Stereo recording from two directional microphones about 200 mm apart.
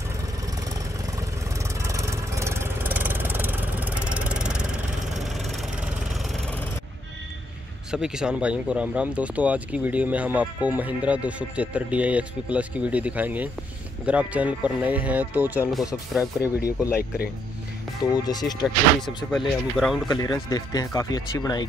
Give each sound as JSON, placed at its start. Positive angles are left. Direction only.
{"t": 1.6, "sound": "vehicle", "side_deg": -15}
{"t": 7.9, "sound": "speech", "side_deg": -5}
{"t": 16.3, "sound": "speech", "side_deg": 15}
{"t": 18.1, "sound": "speech", "side_deg": 20}
{"t": 18.6, "sound": "speech", "side_deg": 0}
{"t": 20.1, "sound": "speech", "side_deg": 20}